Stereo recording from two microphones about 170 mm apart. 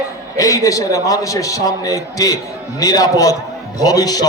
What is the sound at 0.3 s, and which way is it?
A man's voice, 20° left (ahead or behind).